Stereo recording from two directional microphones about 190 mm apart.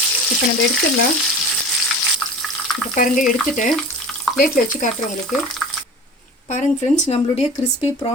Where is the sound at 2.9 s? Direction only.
45° left (ahead or behind).